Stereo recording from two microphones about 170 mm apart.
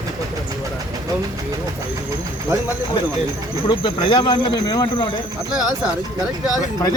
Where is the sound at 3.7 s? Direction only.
30° left (ahead or behind).